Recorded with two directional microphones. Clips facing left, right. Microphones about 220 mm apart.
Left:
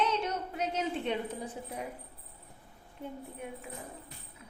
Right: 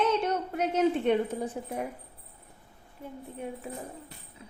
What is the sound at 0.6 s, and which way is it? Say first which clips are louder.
A woman's voice: right 8 dB; 55° right (ahead or behind).